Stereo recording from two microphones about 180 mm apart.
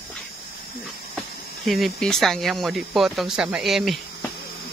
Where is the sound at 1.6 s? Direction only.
Centre (ahead or behind).